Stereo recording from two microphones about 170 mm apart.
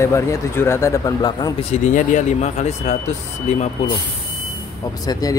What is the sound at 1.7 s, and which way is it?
Speech, 45° left (ahead or behind).